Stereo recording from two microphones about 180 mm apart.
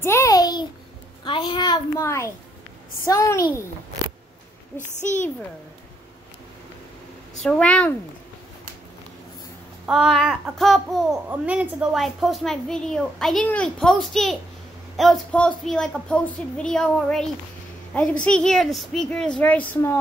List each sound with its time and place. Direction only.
0.0 s a sound: 15° left (ahead or behind)
1.2 s a child's voice: 25° left (ahead or behind)
4.7 s a child's voice: 40° left (ahead or behind)
7.4 s a child's voice: 5° left (ahead or behind)
9.8 s a child's voice: centre (ahead or behind)